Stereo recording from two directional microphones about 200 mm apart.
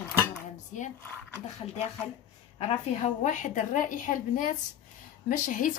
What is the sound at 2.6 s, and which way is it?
Speech, 35° left (ahead or behind).